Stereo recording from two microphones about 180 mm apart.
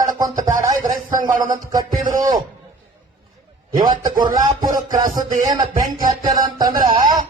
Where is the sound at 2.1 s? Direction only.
20° right (ahead or behind).